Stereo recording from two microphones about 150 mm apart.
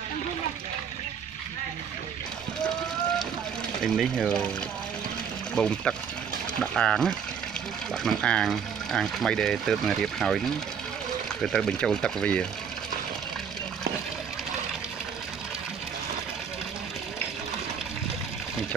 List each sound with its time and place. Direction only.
3.8 s speech: 5° right (ahead or behind)
5.5 s speech: 5° left (ahead or behind)